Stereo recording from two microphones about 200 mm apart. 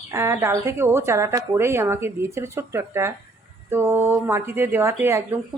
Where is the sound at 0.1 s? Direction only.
15° right (ahead or behind).